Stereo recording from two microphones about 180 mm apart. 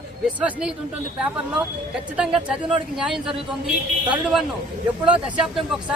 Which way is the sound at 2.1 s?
5° right (ahead or behind).